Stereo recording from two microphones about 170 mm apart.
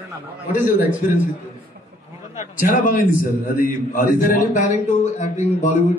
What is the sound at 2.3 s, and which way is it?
A man's voice, 50° left (ahead or behind).